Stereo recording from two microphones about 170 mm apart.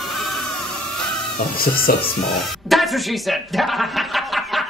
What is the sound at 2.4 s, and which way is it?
Speech, centre (ahead or behind).